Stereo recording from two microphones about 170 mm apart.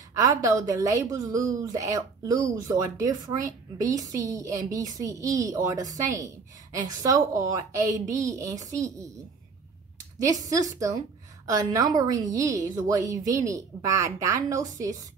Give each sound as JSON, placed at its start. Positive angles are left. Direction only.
{"t": 0.1, "sound": "a woman's voice", "side_deg": -20}
{"t": 10.2, "sound": "a woman's voice", "side_deg": -20}